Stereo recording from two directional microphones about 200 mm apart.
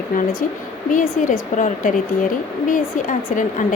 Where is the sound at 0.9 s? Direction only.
40° left (ahead or behind).